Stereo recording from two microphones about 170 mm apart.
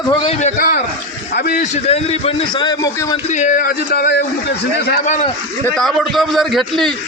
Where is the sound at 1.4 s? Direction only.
60° left (ahead or behind).